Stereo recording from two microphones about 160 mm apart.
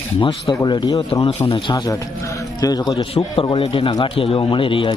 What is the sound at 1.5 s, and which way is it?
Speech, 35° left (ahead or behind).